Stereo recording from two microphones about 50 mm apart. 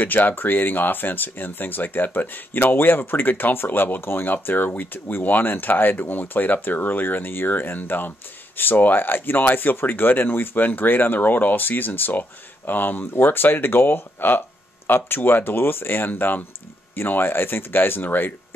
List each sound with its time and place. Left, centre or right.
0.0 s speech: left
16.9 s speech: left